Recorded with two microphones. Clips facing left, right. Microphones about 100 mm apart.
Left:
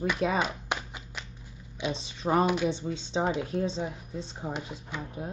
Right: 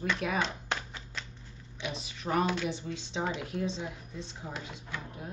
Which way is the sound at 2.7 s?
25° left (ahead or behind).